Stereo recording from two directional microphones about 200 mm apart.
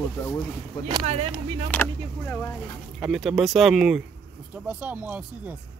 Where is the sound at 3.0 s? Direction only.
5° right (ahead or behind).